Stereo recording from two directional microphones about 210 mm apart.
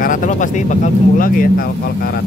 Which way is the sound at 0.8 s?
40° left (ahead or behind).